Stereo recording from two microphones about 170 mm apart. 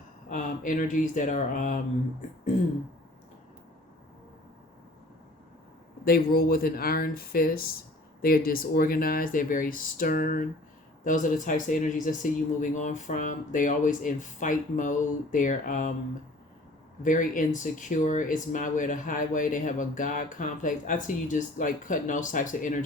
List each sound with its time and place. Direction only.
0.3 s speech: 50° left (ahead or behind)
6.1 s speech: 60° left (ahead or behind)
17.0 s speech: 50° left (ahead or behind)